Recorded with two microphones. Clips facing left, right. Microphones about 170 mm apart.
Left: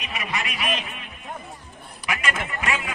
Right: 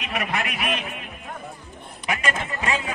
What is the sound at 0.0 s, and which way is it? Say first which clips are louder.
A man's voice: right 3 dB; 60° right (ahead or behind).